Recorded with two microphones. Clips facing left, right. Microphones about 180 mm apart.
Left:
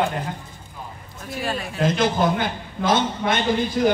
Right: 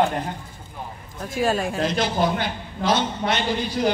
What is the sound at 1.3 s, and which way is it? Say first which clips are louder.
Speech: right 5 dB; 45° right (ahead or behind).